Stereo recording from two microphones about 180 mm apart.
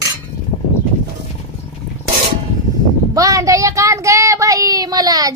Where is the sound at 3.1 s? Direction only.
20° right (ahead or behind).